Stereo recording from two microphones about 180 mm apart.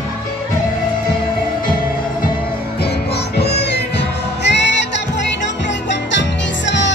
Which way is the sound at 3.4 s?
65° left (ahead or behind).